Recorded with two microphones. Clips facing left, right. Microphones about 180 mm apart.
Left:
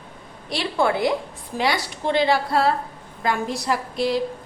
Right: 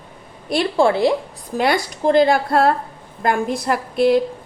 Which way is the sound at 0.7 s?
25° right (ahead or behind).